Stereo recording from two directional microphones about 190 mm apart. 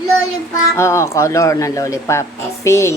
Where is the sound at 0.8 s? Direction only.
15° left (ahead or behind).